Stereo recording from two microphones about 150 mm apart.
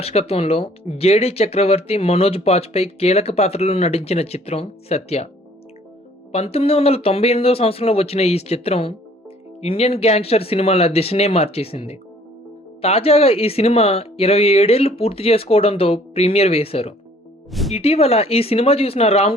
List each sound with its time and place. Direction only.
0.0 s speech: 40° left (ahead or behind)
6.3 s speech: 40° left (ahead or behind)
17.5 s speech: centre (ahead or behind)
17.7 s speech: 40° left (ahead or behind)